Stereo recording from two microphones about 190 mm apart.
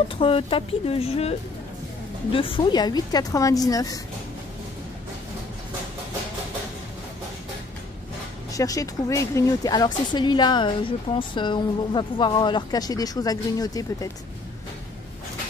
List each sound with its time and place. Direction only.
0.2 s speech: 30° left (ahead or behind)
2.3 s speech: 30° left (ahead or behind)
8.5 s speech: 20° left (ahead or behind)